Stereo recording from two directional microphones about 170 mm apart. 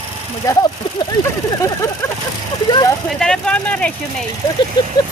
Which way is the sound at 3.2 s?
5° left (ahead or behind).